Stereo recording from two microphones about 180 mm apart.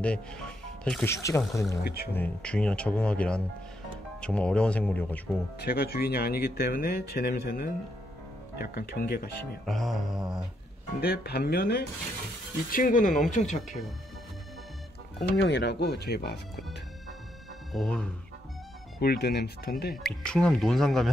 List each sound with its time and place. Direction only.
0.0 s speech: 5° left (ahead or behind)
1.1 s speech: 15° left (ahead or behind)
1.8 s speech: 60° left (ahead or behind)
2.1 s speech: 5° left (ahead or behind)
5.7 s speech: 60° left (ahead or behind)
9.7 s speech: centre (ahead or behind)
11.0 s speech: 60° left (ahead or behind)
12.7 s speech: 50° left (ahead or behind)
15.4 s speech: 70° left (ahead or behind)
17.7 s speech: 5° left (ahead or behind)
18.9 s speech: 65° left (ahead or behind)
20.2 s speech: 5° left (ahead or behind)